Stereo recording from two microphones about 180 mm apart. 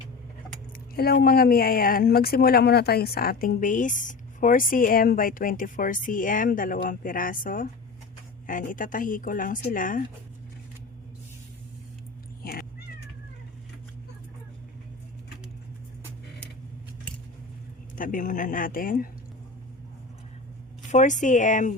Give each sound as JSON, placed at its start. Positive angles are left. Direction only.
{"t": 0.9, "sound": "speech", "side_deg": 60}
{"t": 12.4, "sound": "cat", "side_deg": 55}
{"t": 17.9, "sound": "speech", "side_deg": 45}
{"t": 20.9, "sound": "speech", "side_deg": 45}